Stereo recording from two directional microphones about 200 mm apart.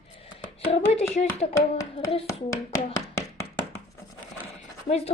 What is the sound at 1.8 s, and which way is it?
Hands, 15° left (ahead or behind).